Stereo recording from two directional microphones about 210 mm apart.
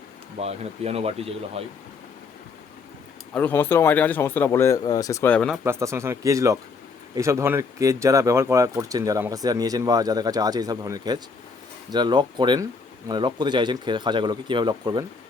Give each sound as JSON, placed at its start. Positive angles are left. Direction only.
{"t": 0.3, "sound": "speech", "side_deg": -30}
{"t": 3.3, "sound": "speech", "side_deg": 10}
{"t": 5.6, "sound": "speech", "side_deg": -15}